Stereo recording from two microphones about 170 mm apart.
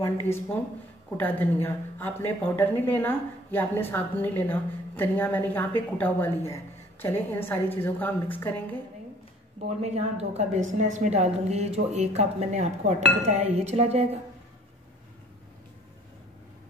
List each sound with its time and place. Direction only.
0.0 s a woman's voice: 15° left (ahead or behind)
9.7 s speech: 40° right (ahead or behind)